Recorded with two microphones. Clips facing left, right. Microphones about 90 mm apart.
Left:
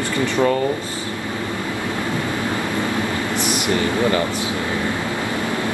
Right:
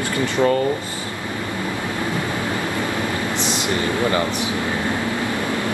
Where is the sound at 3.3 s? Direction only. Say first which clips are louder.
Left 2 dB; 20° right (ahead or behind).